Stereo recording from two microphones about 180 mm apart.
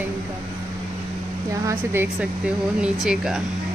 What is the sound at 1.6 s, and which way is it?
A woman's voice, 10° right (ahead or behind).